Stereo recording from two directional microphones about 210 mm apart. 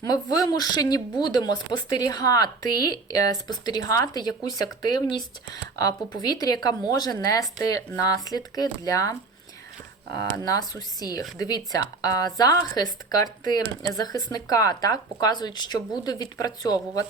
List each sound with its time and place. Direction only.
0.0 s speech: 20° left (ahead or behind)